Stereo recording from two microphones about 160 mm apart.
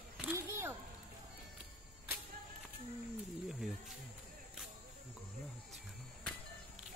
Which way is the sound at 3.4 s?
Centre (ahead or behind).